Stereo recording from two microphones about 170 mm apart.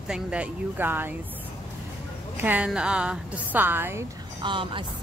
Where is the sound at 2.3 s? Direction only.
10° right (ahead or behind).